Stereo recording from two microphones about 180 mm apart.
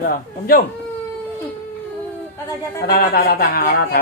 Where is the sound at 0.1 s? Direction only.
55° left (ahead or behind).